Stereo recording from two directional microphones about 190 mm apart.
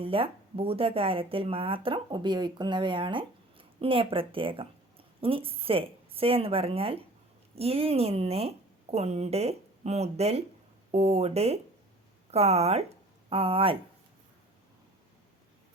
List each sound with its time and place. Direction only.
0.0 s a woman's voice: 30° right (ahead or behind)